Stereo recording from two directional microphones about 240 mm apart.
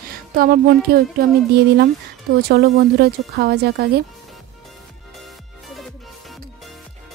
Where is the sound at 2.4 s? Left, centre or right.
Right.